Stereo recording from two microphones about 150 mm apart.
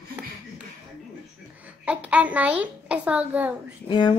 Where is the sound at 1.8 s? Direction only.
10° right (ahead or behind).